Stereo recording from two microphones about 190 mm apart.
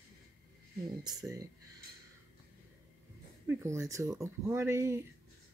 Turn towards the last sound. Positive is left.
turn(degrees=-15)  # may be behind; listen again after turning